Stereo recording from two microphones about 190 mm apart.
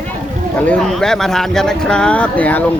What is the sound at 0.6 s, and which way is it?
Speech, 5° left (ahead or behind).